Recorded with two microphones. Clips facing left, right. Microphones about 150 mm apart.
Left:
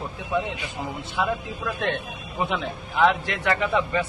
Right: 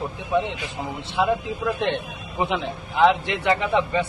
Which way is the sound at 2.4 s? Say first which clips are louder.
Right 2 dB; 20° right (ahead or behind).